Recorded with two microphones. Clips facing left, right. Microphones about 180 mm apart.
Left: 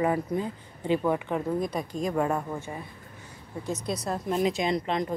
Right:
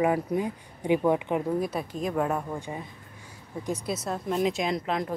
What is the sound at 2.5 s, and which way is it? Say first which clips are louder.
Speech: right 1 dB; 15° right (ahead or behind).